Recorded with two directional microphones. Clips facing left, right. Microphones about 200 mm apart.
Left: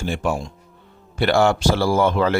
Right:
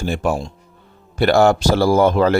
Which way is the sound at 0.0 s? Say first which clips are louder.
Right 3 dB; 40° right (ahead or behind).